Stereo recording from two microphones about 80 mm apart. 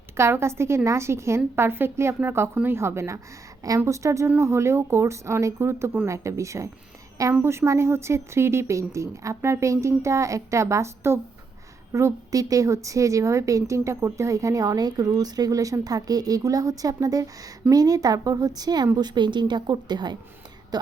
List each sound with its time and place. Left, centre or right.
0.2 s a woman's voice: right